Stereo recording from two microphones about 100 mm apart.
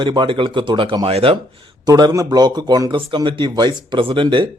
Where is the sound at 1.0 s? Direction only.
70° right (ahead or behind).